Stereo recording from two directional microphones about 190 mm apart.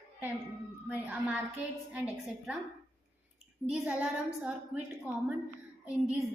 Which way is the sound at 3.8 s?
5° right (ahead or behind).